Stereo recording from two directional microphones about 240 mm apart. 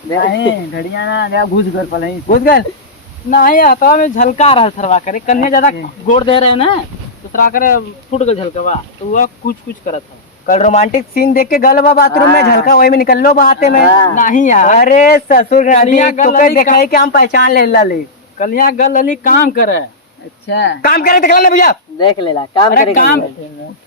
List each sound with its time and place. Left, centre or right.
0.2 s speech: left
7.3 s speech: left
20.5 s speech: left
21.9 s speech: centre
22.7 s speech: left